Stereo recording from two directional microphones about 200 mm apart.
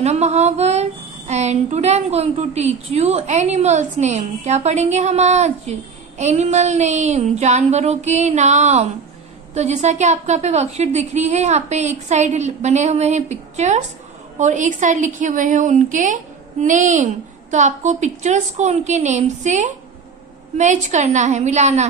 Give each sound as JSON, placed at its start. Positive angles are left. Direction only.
{"t": 0.0, "sound": "speech", "side_deg": -35}